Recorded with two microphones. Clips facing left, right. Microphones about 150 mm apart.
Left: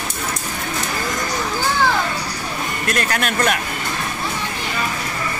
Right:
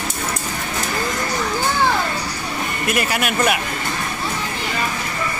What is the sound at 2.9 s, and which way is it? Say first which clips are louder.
Speech: right 1 dB; 5° right (ahead or behind).